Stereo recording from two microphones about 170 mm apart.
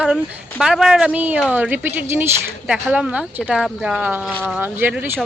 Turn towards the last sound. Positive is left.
turn(degrees=-10)  # may be behind; listen again after turning